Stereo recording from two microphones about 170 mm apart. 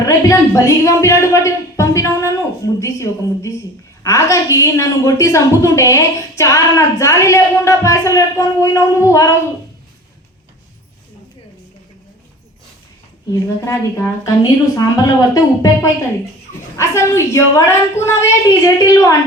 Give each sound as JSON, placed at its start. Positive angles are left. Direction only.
{"t": 0.0, "sound": "a woman's voice", "side_deg": 15}
{"t": 13.3, "sound": "a woman's voice", "side_deg": 20}